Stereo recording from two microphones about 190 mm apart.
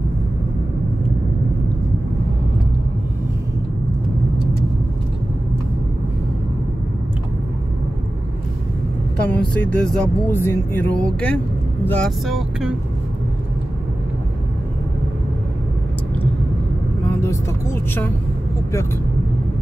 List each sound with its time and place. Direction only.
9.3 s speech: 10° left (ahead or behind)
17.1 s vehicle: 15° left (ahead or behind)